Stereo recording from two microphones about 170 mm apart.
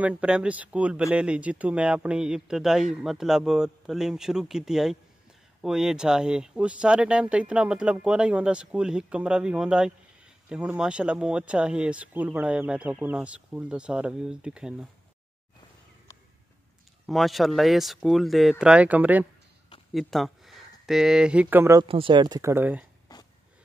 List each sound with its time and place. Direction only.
0.0 s speech: 10° right (ahead or behind)
17.0 s speech: centre (ahead or behind)
21.8 s speech: 30° right (ahead or behind); by 22.8 s 10° right (ahead or behind)
23.1 s a sound: 25° left (ahead or behind)